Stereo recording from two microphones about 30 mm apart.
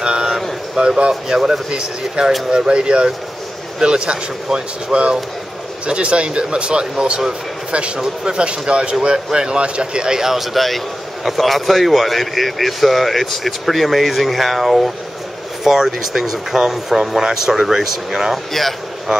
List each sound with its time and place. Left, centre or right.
0.0 s a sound: right
0.7 s speech: right
8.0 s speech: right
9.0 s a man's voice: right
10.1 s speech: centre
18.5 s speech: centre